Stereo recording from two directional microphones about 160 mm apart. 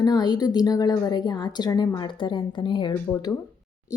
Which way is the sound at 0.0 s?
25° left (ahead or behind).